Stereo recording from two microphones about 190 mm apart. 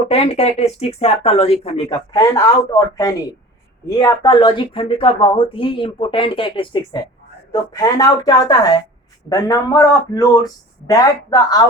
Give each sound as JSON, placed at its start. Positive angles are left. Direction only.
{"t": 0.1, "sound": "speech", "side_deg": 35}
{"t": 2.1, "sound": "speech", "side_deg": 15}